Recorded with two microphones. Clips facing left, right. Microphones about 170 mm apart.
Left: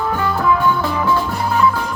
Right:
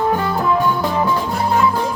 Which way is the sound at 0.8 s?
20° right (ahead or behind).